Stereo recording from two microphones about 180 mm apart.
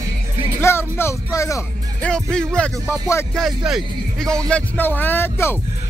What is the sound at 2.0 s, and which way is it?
Speech, 5° left (ahead or behind).